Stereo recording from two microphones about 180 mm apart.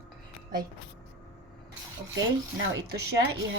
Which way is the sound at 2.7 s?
65° right (ahead or behind).